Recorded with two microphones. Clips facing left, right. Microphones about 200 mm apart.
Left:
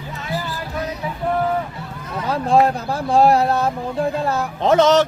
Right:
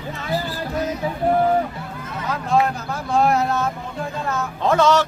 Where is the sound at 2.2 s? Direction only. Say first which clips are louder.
Left 4 dB; 30° left (ahead or behind).